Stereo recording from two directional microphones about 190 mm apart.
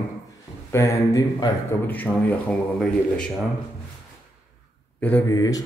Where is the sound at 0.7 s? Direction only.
15° left (ahead or behind).